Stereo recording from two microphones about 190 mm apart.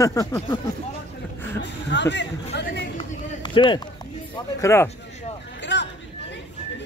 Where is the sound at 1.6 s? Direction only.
65° left (ahead or behind).